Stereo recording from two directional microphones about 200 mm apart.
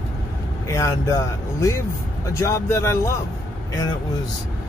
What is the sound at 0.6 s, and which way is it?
Speech, 15° left (ahead or behind).